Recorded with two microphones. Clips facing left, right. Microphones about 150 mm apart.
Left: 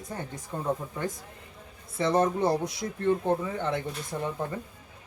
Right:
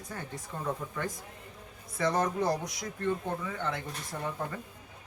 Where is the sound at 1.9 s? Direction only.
30° left (ahead or behind).